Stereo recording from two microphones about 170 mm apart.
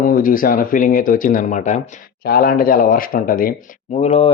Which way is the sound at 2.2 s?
60° left (ahead or behind).